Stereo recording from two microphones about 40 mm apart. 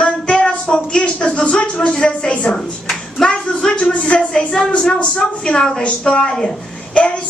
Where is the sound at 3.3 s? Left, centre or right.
Left.